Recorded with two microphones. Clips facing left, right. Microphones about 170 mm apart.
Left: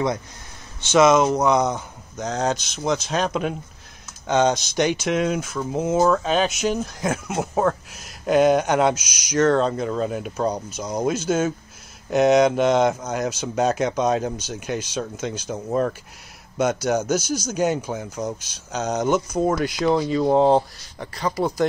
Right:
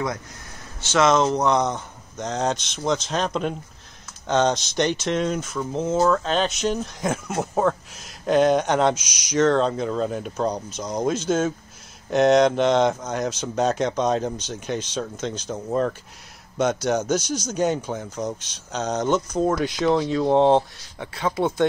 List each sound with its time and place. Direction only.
0.8 s speech: 15° left (ahead or behind)